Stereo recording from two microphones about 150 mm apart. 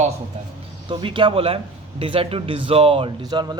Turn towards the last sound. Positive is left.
turn(degrees=-30)  # may be behind; listen again after turning